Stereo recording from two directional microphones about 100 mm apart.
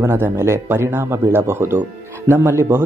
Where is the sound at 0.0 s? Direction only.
25° right (ahead or behind).